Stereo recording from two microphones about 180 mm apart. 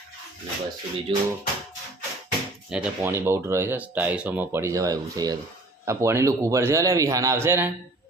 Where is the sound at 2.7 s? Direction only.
5° right (ahead or behind).